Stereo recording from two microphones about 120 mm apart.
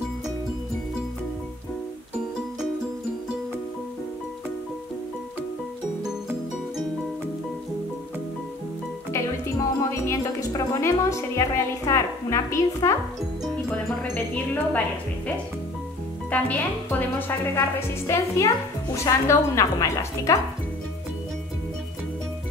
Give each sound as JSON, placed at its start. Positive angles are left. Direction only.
{"t": 9.1, "sound": "music", "side_deg": 25}
{"t": 10.7, "sound": "speech", "side_deg": 25}
{"t": 13.7, "sound": "speech", "side_deg": 15}
{"t": 16.3, "sound": "speech", "side_deg": 15}